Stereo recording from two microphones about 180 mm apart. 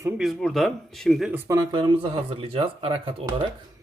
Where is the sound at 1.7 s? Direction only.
30° right (ahead or behind).